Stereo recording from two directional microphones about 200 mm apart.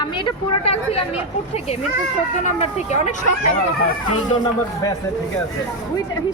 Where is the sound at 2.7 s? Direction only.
35° left (ahead or behind).